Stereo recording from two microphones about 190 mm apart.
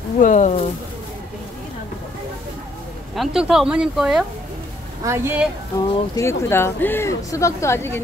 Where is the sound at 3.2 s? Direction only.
Centre (ahead or behind).